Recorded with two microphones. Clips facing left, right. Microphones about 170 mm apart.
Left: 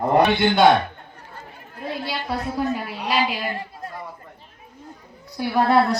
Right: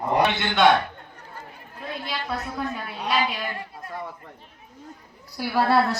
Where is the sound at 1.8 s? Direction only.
30° left (ahead or behind).